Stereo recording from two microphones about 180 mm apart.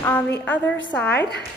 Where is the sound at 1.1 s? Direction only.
70° left (ahead or behind).